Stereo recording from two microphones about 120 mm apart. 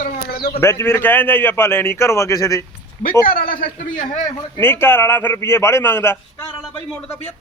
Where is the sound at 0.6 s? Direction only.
20° left (ahead or behind).